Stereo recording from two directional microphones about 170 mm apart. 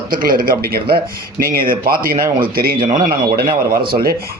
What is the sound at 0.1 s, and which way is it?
Speech, 55° right (ahead or behind).